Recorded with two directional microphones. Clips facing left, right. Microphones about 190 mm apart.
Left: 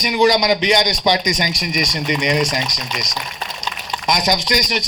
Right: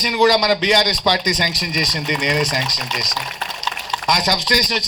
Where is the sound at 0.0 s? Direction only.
15° left (ahead or behind).